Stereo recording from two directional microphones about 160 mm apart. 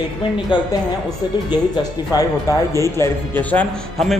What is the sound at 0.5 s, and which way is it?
Speech, 30° left (ahead or behind).